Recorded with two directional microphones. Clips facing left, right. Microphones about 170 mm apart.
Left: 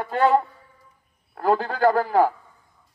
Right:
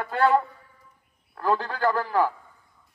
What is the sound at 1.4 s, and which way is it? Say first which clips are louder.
Speech: left 4 dB; 45° left (ahead or behind).